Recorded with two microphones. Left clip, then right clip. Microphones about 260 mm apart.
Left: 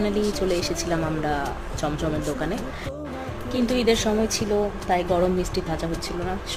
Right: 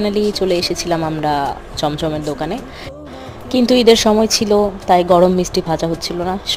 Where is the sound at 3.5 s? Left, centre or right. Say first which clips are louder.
Right 11 dB; right.